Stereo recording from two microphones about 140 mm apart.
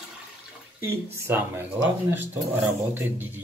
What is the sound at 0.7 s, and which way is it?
Speech, 20° right (ahead or behind).